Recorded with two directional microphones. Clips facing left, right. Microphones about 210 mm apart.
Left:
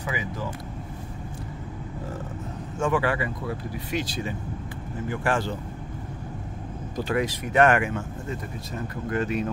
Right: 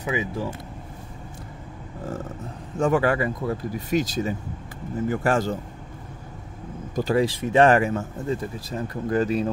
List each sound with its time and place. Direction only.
0.0 s speech: 25° right (ahead or behind)
2.8 s speech: 40° right (ahead or behind)
7.1 s speech: 30° right (ahead or behind)